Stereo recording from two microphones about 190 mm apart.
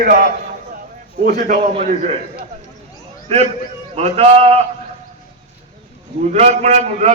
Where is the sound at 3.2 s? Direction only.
35° right (ahead or behind).